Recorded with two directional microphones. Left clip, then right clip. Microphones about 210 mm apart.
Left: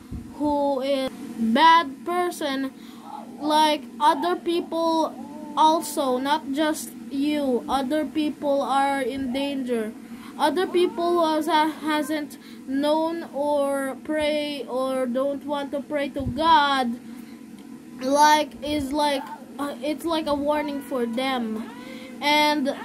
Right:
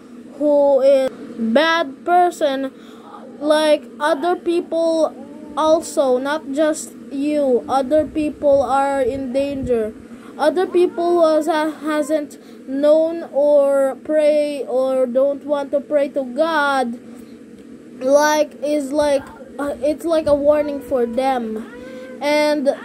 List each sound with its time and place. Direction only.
0.7 s a child's voice: centre (ahead or behind)
18.0 s a child's voice: centre (ahead or behind)